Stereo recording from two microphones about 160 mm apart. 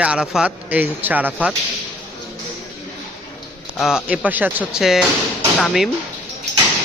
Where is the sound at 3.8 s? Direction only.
5° right (ahead or behind).